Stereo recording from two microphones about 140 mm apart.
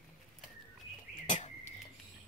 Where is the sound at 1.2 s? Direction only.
60° left (ahead or behind).